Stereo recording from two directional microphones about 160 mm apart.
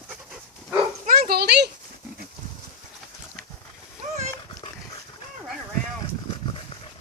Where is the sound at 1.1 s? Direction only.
75° right (ahead or behind); by 1.7 s 90° right.